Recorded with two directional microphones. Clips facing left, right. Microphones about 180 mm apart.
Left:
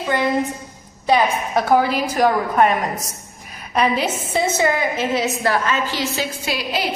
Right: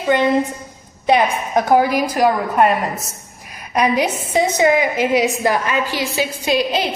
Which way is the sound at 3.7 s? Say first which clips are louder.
Right 2 dB; 15° right (ahead or behind).